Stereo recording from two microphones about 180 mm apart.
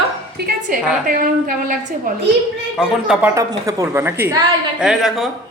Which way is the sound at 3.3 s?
20° right (ahead or behind).